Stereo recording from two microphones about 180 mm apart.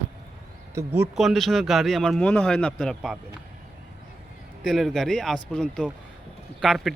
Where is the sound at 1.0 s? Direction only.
Centre (ahead or behind).